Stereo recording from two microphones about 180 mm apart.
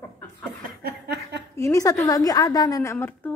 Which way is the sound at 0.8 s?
60° right (ahead or behind).